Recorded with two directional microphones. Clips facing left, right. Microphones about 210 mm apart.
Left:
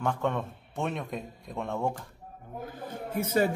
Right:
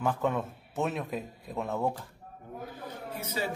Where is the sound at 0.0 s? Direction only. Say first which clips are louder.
Even; 5° right (ahead or behind).